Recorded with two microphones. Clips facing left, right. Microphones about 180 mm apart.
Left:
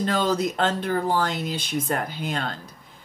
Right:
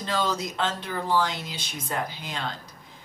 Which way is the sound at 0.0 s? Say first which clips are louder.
Left 5 dB; 55° left (ahead or behind).